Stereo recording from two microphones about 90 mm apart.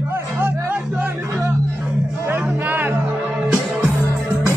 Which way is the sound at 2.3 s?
25° right (ahead or behind).